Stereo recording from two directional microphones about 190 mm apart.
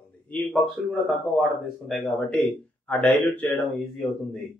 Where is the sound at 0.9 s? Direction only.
Centre (ahead or behind).